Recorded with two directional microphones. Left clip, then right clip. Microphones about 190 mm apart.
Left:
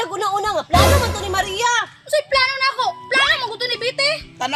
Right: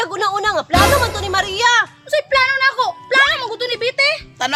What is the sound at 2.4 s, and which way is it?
Child singing, 40° right (ahead or behind).